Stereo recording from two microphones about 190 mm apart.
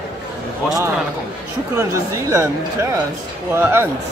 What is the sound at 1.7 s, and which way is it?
Speech, 15° right (ahead or behind).